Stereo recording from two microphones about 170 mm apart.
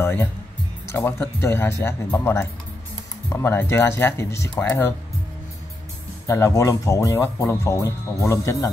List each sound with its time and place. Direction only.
0.0 s speech: 10° left (ahead or behind)
6.2 s speech: 15° left (ahead or behind)